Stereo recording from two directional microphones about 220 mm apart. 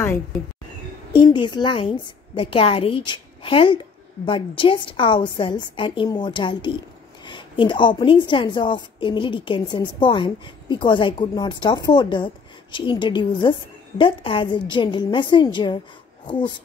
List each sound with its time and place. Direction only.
1.1 s a woman's voice: 20° left (ahead or behind)